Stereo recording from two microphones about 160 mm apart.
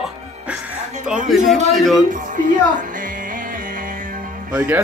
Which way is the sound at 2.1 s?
55° right (ahead or behind).